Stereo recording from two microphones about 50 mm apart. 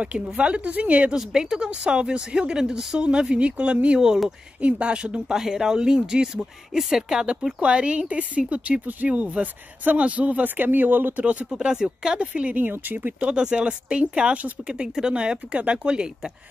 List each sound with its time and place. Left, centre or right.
0.0 s a woman's voice: right
1.1 s a woman's voice: centre
5.4 s speech: centre
7.6 s a woman's voice: right
11.2 s a woman's voice: right
11.6 s speech: centre
12.5 s speech: right
13.3 s a woman's voice: centre